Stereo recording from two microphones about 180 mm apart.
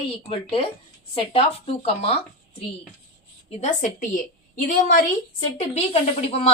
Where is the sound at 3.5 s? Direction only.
40° left (ahead or behind).